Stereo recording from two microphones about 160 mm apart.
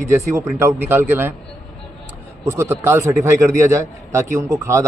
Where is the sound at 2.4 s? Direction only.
15° right (ahead or behind).